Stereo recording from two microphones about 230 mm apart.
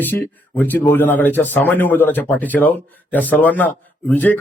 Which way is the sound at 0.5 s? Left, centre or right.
Centre.